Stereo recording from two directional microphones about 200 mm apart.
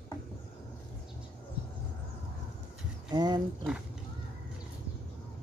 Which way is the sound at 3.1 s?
20° right (ahead or behind).